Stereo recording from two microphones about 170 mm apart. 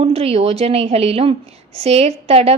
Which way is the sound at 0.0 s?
35° right (ahead or behind).